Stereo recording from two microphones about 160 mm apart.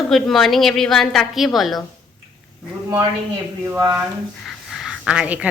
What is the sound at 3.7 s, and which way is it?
Speech, 15° right (ahead or behind).